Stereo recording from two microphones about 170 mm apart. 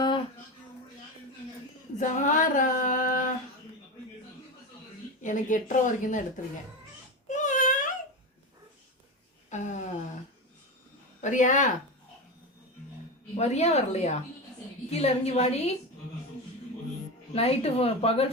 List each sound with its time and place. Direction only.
2.0 s speech: 45° left (ahead or behind)
5.2 s a woman's voice: 50° left (ahead or behind)
7.3 s a sound: 45° left (ahead or behind)
9.5 s a sound: 45° left (ahead or behind)
11.2 s speech: 45° left (ahead or behind)
13.3 s speech: 40° left (ahead or behind)
17.3 s speech: 35° left (ahead or behind)